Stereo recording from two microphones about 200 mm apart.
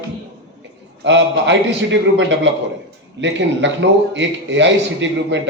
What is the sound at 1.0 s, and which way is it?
A man's voice, 65° right (ahead or behind).